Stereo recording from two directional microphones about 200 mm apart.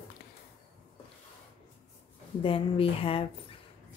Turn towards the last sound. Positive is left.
turn(degrees=30)  # may be behind; listen again after turning